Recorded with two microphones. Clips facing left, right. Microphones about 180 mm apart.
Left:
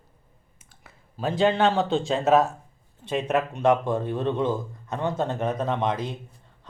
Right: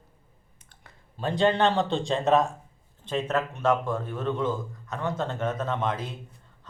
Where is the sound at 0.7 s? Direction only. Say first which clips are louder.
Left 4 dB; 5° left (ahead or behind).